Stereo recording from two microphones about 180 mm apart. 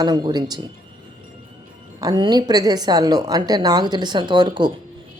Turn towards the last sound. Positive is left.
turn(degrees=-25)  # may be behind; listen again after turning